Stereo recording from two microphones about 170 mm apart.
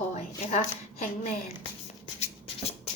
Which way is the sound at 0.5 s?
40° left (ahead or behind).